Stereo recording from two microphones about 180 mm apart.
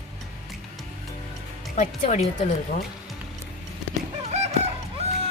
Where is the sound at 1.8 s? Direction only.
40° left (ahead or behind).